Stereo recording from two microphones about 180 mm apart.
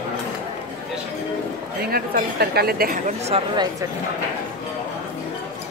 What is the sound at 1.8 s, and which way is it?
A woman's voice, 60° right (ahead or behind).